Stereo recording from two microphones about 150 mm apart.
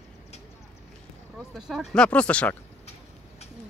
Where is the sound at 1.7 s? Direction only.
Centre (ahead or behind).